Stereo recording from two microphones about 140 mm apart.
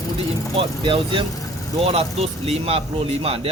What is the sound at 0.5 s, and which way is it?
Speech, 40° right (ahead or behind).